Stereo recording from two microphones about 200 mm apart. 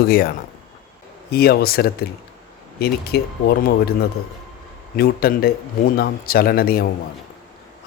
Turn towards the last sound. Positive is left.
turn(degrees=50)  # may be behind; listen again after turning